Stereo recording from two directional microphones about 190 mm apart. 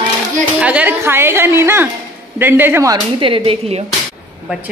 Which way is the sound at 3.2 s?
30° right (ahead or behind).